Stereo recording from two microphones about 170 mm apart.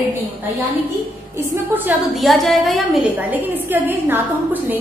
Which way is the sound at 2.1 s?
Centre (ahead or behind).